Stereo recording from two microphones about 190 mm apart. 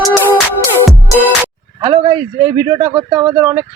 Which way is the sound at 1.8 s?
25° right (ahead or behind).